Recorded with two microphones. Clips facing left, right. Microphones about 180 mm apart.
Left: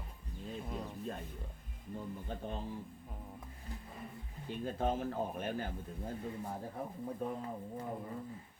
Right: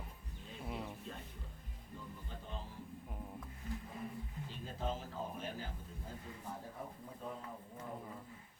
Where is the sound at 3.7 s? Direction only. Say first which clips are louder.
Right 4 dB; 35° left (ahead or behind).